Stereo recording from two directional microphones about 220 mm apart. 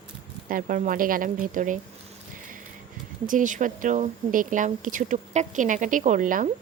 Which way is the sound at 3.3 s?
35° right (ahead or behind).